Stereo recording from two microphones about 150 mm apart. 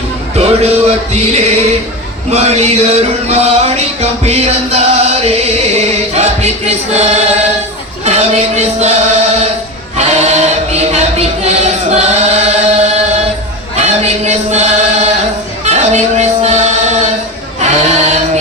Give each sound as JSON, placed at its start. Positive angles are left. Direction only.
{"t": 0.3, "sound": "music", "side_deg": -45}
{"t": 8.0, "sound": "chant", "side_deg": -45}
{"t": 10.0, "sound": "choir", "side_deg": -45}
{"t": 13.7, "sound": "chant", "side_deg": -50}
{"t": 15.6, "sound": "music", "side_deg": -50}
{"t": 17.6, "sound": "chant", "side_deg": -50}